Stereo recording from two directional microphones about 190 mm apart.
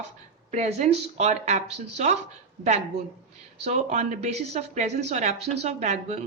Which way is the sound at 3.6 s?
35° right (ahead or behind).